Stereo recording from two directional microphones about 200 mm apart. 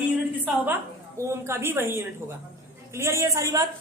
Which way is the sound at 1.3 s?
10° right (ahead or behind).